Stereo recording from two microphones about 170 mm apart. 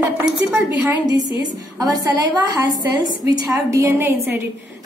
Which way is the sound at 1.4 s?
20° right (ahead or behind).